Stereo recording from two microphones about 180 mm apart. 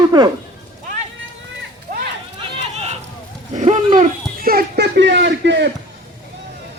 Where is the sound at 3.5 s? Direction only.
40° right (ahead or behind); by 5.7 s 70° right (ahead or behind).